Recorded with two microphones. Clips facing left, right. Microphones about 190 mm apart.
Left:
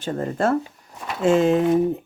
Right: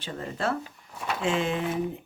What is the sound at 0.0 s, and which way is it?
Speech, 45° left (ahead or behind).